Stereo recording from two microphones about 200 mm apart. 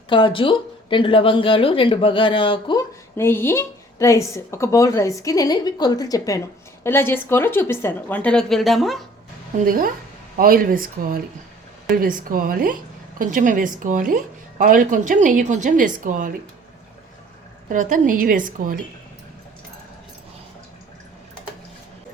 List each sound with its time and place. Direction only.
0.1 s speech: 25° left (ahead or behind)
3.2 s a woman's voice: 10° left (ahead or behind)
9.6 s a woman's voice: 45° right (ahead or behind)
17.7 s a woman's voice: 40° right (ahead or behind)